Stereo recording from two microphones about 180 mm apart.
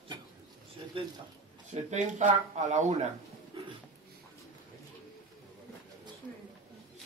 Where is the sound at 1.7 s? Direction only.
40° right (ahead or behind).